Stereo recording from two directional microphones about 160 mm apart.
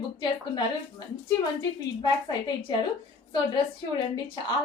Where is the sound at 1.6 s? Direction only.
25° left (ahead or behind).